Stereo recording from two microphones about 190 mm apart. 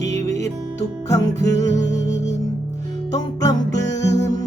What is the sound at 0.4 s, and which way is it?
Music, 15° left (ahead or behind).